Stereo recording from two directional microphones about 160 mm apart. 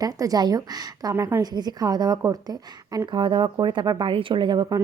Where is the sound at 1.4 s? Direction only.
25° right (ahead or behind).